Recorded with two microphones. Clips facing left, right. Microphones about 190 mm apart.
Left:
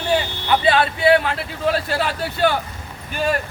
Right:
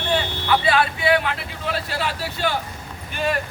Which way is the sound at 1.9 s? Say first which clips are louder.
Left 4 dB; 50° left (ahead or behind).